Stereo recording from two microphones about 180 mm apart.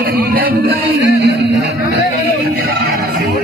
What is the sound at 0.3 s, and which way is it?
Music, 55° right (ahead or behind).